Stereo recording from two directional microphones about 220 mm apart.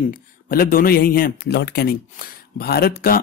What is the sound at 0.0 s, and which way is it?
Speech, 40° left (ahead or behind).